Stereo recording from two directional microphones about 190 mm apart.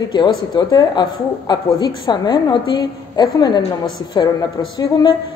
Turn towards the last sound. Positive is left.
turn(degrees=20)  # may be behind; listen again after turning